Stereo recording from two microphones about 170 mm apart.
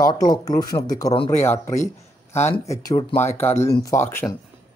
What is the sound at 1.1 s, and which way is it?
Speech, 30° left (ahead or behind).